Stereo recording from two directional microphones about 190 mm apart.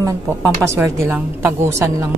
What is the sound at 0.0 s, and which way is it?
A woman's voice, 15° right (ahead or behind).